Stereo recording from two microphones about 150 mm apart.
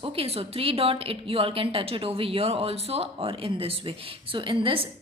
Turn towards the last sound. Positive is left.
turn(degrees=-35)  # may be behind; listen again after turning